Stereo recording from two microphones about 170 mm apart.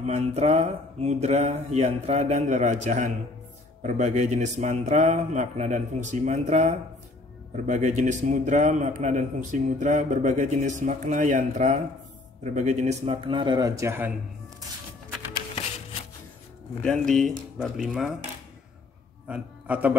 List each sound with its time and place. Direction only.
0.0 s a man's voice: 40° right (ahead or behind); by 14.1 s 15° right (ahead or behind)
16.8 s speech: 5° left (ahead or behind)
19.2 s a man's voice: 5° right (ahead or behind)